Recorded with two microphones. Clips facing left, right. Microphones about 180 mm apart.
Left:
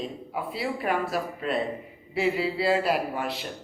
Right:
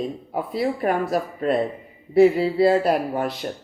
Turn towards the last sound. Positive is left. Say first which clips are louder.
# right 5 dB
turn(degrees=-40)  # may be behind; listen again after turning